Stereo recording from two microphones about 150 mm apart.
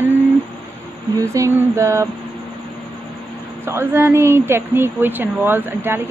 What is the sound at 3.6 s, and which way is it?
Speech, 15° right (ahead or behind).